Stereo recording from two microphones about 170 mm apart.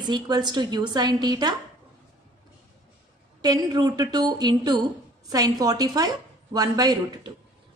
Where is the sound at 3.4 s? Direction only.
20° right (ahead or behind).